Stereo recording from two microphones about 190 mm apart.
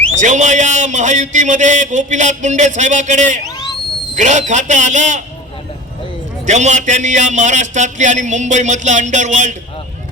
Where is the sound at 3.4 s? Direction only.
20° left (ahead or behind).